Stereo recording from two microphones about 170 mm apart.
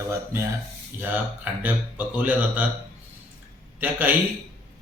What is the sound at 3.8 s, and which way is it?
Speech, 10° right (ahead or behind).